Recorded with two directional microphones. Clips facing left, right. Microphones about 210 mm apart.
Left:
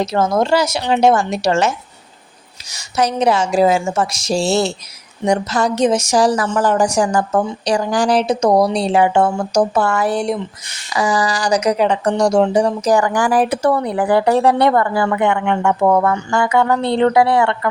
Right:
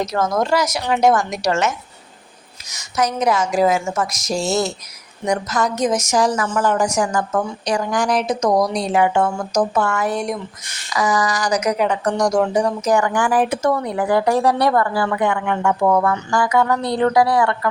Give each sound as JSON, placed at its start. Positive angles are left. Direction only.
{"t": 0.0, "sound": "speech", "side_deg": 30}
{"t": 2.7, "sound": "a woman's voice", "side_deg": 30}